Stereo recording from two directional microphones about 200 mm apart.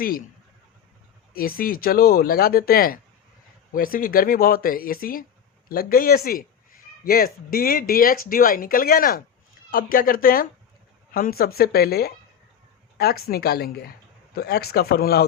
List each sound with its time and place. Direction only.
1.3 s speech: 45° left (ahead or behind)